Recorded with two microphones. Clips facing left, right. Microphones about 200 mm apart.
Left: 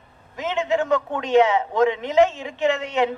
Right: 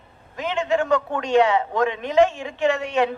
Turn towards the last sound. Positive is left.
turn(degrees=20)  # may be behind; listen again after turning